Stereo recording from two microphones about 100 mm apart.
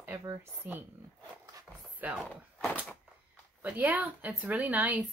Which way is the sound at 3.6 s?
15° right (ahead or behind).